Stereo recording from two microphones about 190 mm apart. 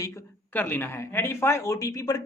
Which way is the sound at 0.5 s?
10° left (ahead or behind).